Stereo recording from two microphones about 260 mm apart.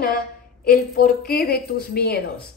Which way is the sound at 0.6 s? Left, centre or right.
Left.